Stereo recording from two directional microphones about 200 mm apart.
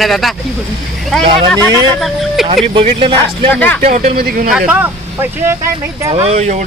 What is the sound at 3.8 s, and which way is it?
Speech, 35° right (ahead or behind).